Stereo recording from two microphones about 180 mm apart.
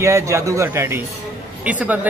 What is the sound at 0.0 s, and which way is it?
Speech, 15° right (ahead or behind).